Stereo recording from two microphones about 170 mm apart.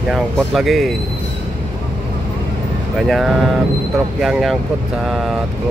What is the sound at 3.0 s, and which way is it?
Speech, centre (ahead or behind).